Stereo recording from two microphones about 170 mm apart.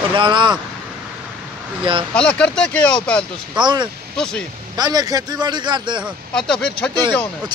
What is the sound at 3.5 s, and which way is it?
Speech, 25° right (ahead or behind).